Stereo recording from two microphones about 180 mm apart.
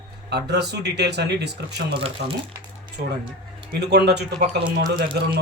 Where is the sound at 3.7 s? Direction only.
65° right (ahead or behind).